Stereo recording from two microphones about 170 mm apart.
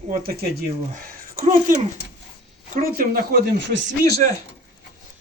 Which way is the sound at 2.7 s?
55° right (ahead or behind).